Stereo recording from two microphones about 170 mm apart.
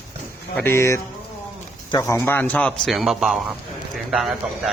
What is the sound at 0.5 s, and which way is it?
Speech, 15° left (ahead or behind).